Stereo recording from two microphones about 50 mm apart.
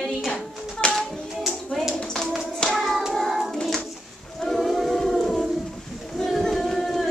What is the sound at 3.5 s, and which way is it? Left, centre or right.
Bird, centre.